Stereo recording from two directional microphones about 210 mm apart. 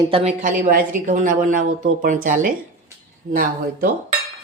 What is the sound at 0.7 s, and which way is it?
Speech, 40° right (ahead or behind).